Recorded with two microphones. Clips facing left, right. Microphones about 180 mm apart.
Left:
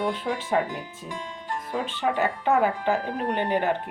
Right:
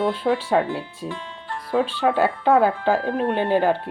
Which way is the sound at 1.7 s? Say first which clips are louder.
Right 7 dB; 90° right.